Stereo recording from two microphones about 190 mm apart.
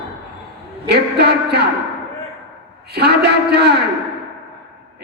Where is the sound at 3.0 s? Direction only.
60° right (ahead or behind).